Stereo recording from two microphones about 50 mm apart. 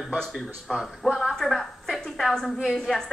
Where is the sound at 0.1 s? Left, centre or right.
Centre.